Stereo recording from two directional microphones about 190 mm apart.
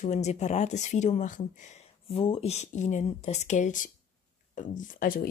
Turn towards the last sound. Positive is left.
turn(degrees=50)  # may be behind; listen again after turning